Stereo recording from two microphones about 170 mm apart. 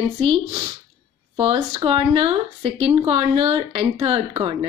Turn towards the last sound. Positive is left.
turn(degrees=-35)  # may be behind; listen again after turning